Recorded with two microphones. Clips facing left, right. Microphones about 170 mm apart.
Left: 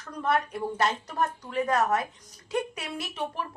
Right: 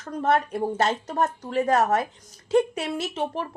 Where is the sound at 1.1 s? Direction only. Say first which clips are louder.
Right 4 dB; 40° right (ahead or behind).